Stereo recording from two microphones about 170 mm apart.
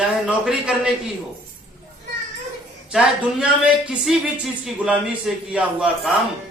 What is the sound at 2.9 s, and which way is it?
A man's voice, 5° right (ahead or behind).